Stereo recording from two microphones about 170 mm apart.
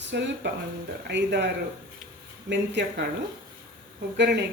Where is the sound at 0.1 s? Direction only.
90° right.